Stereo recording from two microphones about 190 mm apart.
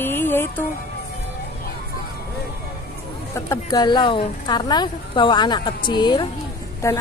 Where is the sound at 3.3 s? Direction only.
20° left (ahead or behind).